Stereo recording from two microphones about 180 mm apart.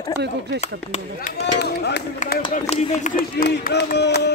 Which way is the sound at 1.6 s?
65° left (ahead or behind).